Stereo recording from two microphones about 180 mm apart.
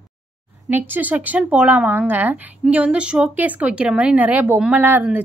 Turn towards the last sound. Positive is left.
turn(degrees=-10)  # may be behind; listen again after turning